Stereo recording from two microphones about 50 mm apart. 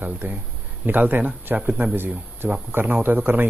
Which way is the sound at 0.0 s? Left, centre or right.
Right.